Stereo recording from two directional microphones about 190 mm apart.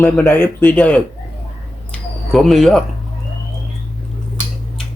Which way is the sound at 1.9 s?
Centre (ahead or behind).